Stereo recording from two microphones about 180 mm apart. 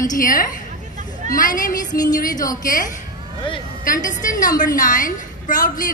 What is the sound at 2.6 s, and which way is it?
A woman's voice, 50° left (ahead or behind).